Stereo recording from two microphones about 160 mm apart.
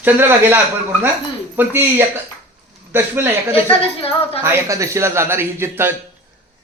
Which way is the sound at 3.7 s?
35° left (ahead or behind).